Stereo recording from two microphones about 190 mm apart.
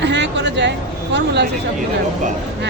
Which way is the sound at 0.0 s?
70° right (ahead or behind).